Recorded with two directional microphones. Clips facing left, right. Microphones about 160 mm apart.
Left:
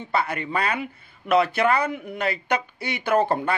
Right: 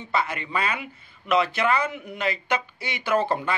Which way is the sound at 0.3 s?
55° left (ahead or behind).